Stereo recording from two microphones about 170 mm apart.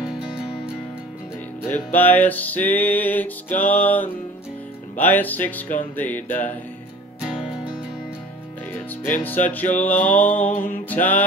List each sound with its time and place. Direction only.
0.0 s music: 5° right (ahead or behind)
1.9 s music: 10° left (ahead or behind)
7.2 s music: 5° right (ahead or behind)
9.2 s music: 10° left (ahead or behind)
10.5 s music: 55° left (ahead or behind)
10.9 s music: 10° left (ahead or behind)